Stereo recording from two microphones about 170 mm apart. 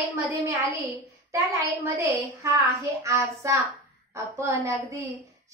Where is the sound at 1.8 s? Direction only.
15° right (ahead or behind).